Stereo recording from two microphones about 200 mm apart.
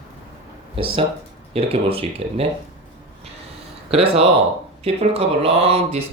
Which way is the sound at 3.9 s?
30° right (ahead or behind).